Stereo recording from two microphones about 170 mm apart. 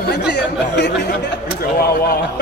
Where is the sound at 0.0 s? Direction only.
80° left.